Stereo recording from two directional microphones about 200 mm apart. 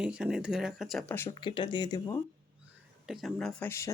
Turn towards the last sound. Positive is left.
turn(degrees=15)  # may be behind; listen again after turning